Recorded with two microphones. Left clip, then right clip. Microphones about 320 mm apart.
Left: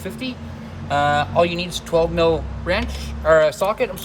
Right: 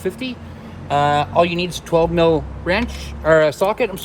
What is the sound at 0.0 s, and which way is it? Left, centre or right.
Speech, right.